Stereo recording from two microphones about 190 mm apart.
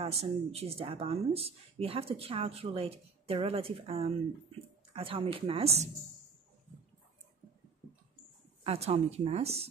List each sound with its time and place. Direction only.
0.0 s a woman's voice: 35° right (ahead or behind)
8.6 s speech: 30° right (ahead or behind)